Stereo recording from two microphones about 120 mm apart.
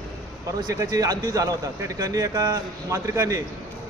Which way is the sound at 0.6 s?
30° right (ahead or behind).